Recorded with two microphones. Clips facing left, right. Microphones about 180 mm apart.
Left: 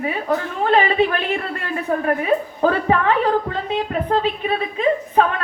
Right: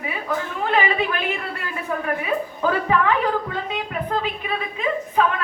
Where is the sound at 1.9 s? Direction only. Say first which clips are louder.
Left 5 dB; 40° left (ahead or behind).